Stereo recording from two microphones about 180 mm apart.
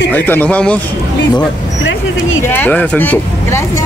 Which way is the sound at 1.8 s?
90° left.